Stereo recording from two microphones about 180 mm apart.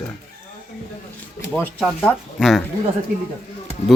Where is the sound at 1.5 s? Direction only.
5° left (ahead or behind).